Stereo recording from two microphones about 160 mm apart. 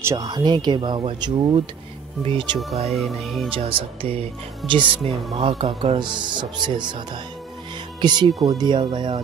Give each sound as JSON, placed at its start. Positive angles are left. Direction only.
{"t": 0.0, "sound": "speech", "side_deg": -20}
{"t": 2.9, "sound": "speech", "side_deg": 0}
{"t": 3.5, "sound": "speech", "side_deg": -35}
{"t": 8.0, "sound": "speech", "side_deg": -25}